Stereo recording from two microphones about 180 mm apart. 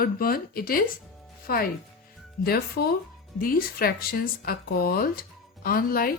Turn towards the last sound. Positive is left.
turn(degrees=55)  # may be behind; listen again after turning